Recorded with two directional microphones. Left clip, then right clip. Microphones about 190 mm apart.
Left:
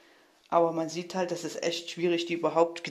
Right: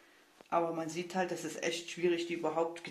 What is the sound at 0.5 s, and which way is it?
Speech, 40° left (ahead or behind).